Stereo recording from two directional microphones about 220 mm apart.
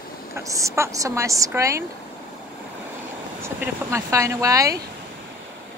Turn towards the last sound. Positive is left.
turn(degrees=-15)  # may be behind; listen again after turning